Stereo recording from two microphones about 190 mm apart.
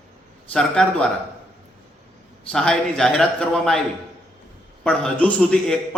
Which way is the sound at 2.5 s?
5° left (ahead or behind).